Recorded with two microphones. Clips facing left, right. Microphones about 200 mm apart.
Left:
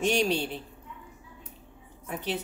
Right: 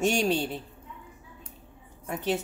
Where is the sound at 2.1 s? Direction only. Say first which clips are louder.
Right 4 dB; 45° right (ahead or behind).